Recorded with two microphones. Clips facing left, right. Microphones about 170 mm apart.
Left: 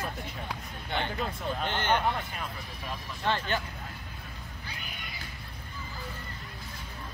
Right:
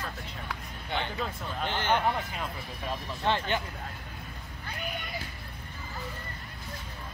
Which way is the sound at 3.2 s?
15° right (ahead or behind).